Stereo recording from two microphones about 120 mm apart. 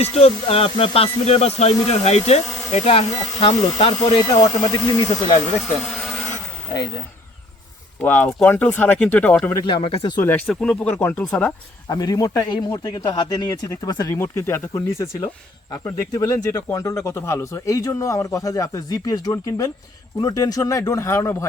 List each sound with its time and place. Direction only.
0.0 s speech: 60° left (ahead or behind)
4.0 s speech: 40° left (ahead or behind)
5.8 s blender: 5° left (ahead or behind)
8.0 s speech: 15° left (ahead or behind)
9.6 s speech: 40° left (ahead or behind)
10.2 s speech: 20° left (ahead or behind)
10.5 s speech: 5° left (ahead or behind)
11.9 s a man's voice: 30° left (ahead or behind)